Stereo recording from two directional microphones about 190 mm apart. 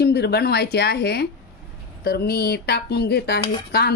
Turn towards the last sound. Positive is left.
turn(degrees=55)  # may be behind; listen again after turning